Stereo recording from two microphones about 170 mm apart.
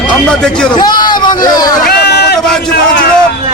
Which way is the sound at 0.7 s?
25° left (ahead or behind).